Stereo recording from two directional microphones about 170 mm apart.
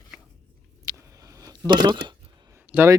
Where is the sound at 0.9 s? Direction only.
20° right (ahead or behind).